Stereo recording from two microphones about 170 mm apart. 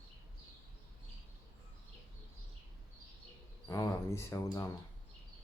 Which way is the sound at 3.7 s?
20° left (ahead or behind).